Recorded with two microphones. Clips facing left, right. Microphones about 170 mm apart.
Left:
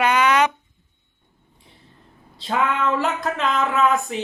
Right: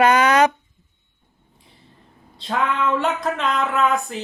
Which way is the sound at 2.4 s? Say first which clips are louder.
Even; centre (ahead or behind).